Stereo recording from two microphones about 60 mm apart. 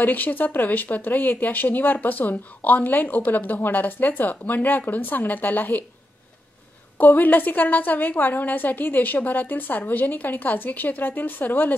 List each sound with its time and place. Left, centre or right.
0.0 s speech: left
7.0 s a woman's voice: left